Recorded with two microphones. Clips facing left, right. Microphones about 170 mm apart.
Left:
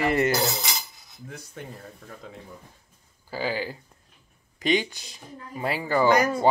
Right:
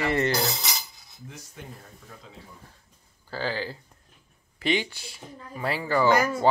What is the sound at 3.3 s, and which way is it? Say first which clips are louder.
Speech: left 2 dB; 10° left (ahead or behind).